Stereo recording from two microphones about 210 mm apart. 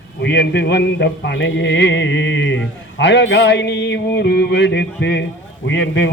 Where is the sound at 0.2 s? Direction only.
50° left (ahead or behind).